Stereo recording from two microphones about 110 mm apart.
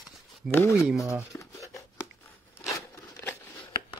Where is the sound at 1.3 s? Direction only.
30° left (ahead or behind).